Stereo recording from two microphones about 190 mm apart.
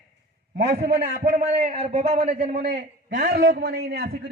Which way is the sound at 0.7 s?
40° right (ahead or behind).